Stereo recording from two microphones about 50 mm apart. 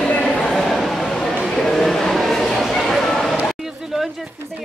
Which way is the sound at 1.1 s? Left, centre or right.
Centre.